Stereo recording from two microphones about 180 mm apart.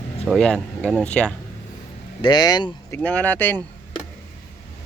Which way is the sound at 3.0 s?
10° left (ahead or behind).